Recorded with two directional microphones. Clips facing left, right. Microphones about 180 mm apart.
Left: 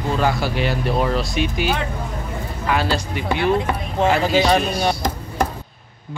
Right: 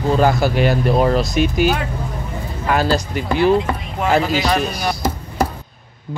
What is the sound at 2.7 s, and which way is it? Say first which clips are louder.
Speech: right 4 dB; 40° right (ahead or behind).